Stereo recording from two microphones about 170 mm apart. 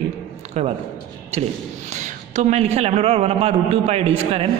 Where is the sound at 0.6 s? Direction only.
40° right (ahead or behind).